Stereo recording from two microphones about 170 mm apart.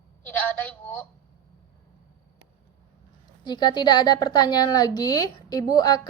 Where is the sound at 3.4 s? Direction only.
25° left (ahead or behind).